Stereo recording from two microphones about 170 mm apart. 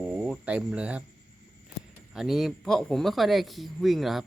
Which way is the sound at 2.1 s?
Centre (ahead or behind).